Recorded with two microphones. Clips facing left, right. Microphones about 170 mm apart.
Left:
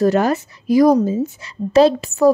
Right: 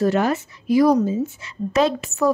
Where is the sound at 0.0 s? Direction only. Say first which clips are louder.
Left 4 dB; 40° left (ahead or behind).